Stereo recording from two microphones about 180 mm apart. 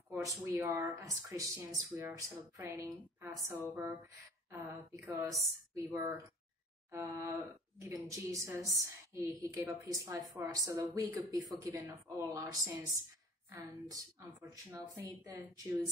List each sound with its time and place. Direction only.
0.1 s a woman's voice: 15° right (ahead or behind)